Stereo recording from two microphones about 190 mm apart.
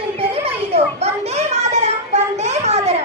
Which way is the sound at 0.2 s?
30° right (ahead or behind).